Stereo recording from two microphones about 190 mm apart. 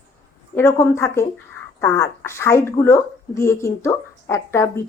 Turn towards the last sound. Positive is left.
turn(degrees=15)  # may be behind; listen again after turning